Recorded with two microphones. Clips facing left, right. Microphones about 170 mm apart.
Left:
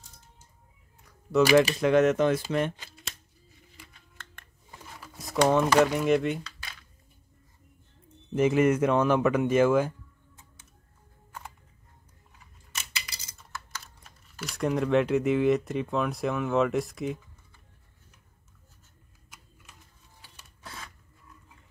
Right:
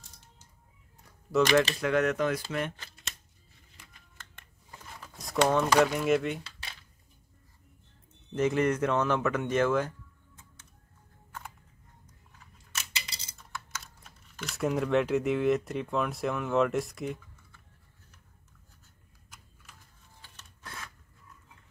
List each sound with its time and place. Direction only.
1.3 s speech: 5° left (ahead or behind)
1.8 s speech: 20° left (ahead or behind)
4.6 s a sound: 5° left (ahead or behind)
8.4 s speech: 10° left (ahead or behind)
12.9 s a sound: 25° right (ahead or behind)
13.4 s speech: centre (ahead or behind)
20.2 s printer: 5° left (ahead or behind)